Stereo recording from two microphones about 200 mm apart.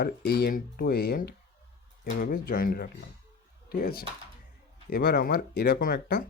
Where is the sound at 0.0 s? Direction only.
50° left (ahead or behind).